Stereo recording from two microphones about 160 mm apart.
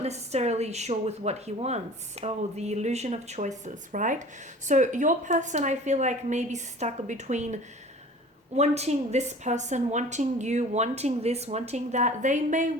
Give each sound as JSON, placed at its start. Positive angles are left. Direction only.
{"t": 0.0, "sound": "a woman's voice", "side_deg": -40}